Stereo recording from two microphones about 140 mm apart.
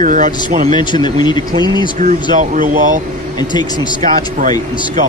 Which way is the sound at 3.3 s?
30° left (ahead or behind).